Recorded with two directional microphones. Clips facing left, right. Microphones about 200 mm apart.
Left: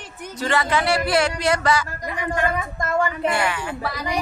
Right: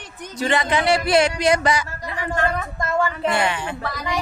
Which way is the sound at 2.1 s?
10° left (ahead or behind).